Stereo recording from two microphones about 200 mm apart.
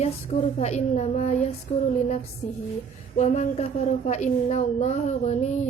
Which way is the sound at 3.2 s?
35° left (ahead or behind).